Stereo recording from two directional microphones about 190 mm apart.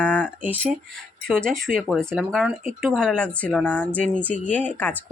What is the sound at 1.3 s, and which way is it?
Speech, 5° left (ahead or behind).